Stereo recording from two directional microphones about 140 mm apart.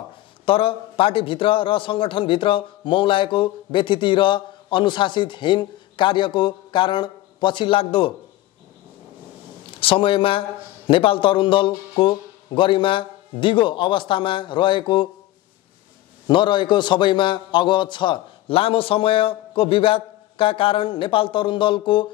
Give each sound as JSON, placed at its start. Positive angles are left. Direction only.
{"t": 0.5, "sound": "a man's voice", "side_deg": 40}
{"t": 9.8, "sound": "a man's voice", "side_deg": 40}
{"t": 16.3, "sound": "a man's voice", "side_deg": 35}